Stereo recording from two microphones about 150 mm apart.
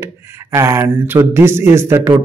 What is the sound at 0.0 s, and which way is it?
Speech, 20° right (ahead or behind).